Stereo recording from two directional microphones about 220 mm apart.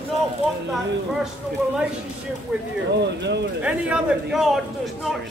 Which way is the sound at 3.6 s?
5° right (ahead or behind).